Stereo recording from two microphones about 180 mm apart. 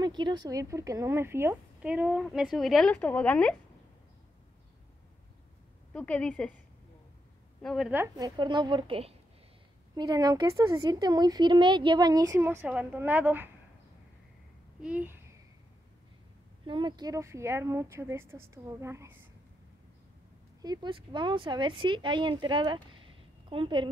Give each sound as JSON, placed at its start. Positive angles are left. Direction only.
{"t": 0.0, "sound": "a woman's voice", "side_deg": -25}
{"t": 5.9, "sound": "a woman's voice", "side_deg": 5}
{"t": 7.6, "sound": "a woman's voice", "side_deg": 0}
{"t": 8.2, "sound": "a woman's voice", "side_deg": -25}
{"t": 14.8, "sound": "speech", "side_deg": -10}
{"t": 16.6, "sound": "speech", "side_deg": -25}
{"t": 20.6, "sound": "a woman's voice", "side_deg": -25}